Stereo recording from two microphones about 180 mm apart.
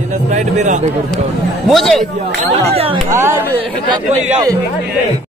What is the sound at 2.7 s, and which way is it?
Speech, 35° right (ahead or behind).